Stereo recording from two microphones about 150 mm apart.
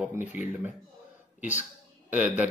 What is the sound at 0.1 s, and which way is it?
Speech, 10° right (ahead or behind).